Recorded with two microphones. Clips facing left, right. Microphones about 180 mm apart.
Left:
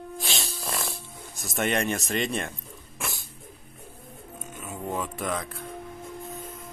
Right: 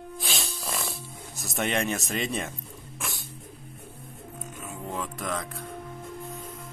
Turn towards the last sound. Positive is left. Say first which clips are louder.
# left 2 dB
turn(degrees=0)  # may be behind; listen again after turning